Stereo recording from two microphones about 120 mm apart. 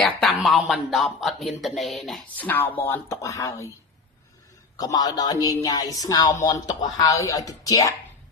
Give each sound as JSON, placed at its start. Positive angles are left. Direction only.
{"t": 0.0, "sound": "speech", "side_deg": 0}
{"t": 2.3, "sound": "speech", "side_deg": 15}
{"t": 4.8, "sound": "speech", "side_deg": 30}